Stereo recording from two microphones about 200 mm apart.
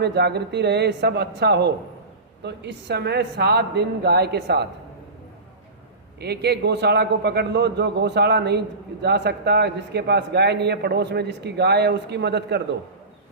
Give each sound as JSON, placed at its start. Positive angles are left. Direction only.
{"t": 0.0, "sound": "a man's voice", "side_deg": -55}
{"t": 6.1, "sound": "a man's voice", "side_deg": -55}